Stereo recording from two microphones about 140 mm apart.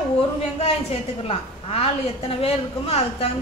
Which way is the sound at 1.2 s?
45° left (ahead or behind).